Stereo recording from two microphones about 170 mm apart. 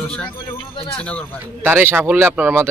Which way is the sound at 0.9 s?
5° left (ahead or behind).